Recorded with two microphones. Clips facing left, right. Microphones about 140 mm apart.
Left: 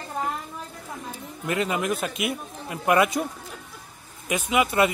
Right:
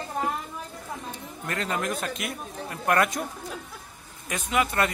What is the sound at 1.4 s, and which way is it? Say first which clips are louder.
Speech: left 4 dB; 10° left (ahead or behind).